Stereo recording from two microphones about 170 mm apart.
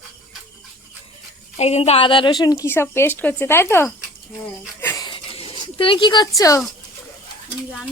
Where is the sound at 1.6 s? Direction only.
40° left (ahead or behind); by 3.9 s 15° left (ahead or behind).